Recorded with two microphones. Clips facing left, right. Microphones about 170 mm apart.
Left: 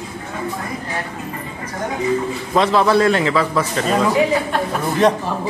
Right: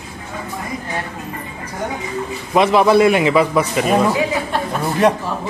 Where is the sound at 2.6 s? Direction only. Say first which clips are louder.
Right 3 dB; 15° right (ahead or behind).